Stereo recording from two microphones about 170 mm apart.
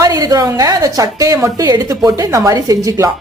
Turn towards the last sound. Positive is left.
turn(degrees=-20)  # may be behind; listen again after turning